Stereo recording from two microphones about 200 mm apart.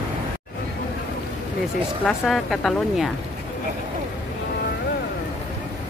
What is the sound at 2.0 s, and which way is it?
Speech, centre (ahead or behind).